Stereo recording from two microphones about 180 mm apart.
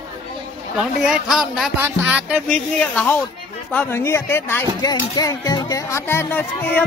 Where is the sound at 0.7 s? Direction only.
5° right (ahead or behind).